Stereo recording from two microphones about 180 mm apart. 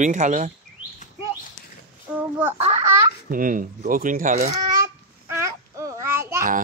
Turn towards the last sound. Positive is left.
turn(degrees=-15)  # may be behind; listen again after turning